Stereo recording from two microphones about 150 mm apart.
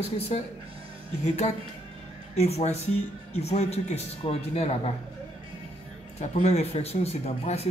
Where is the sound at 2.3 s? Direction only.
45° left (ahead or behind).